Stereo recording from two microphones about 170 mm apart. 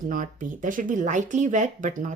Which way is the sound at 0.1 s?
50° right (ahead or behind).